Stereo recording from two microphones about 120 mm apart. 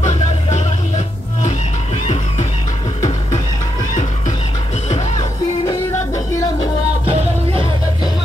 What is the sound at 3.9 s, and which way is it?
Music, 90° left.